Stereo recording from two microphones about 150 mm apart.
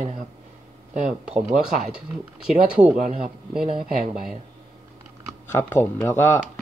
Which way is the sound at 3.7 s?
60° right (ahead or behind).